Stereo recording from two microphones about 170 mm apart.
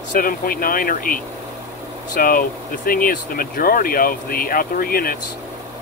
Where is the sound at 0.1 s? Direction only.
55° left (ahead or behind).